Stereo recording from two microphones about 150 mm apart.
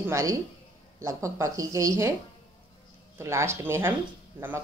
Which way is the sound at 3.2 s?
20° right (ahead or behind).